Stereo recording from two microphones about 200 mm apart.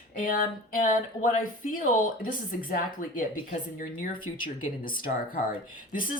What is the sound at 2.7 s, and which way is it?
Speech, 45° left (ahead or behind).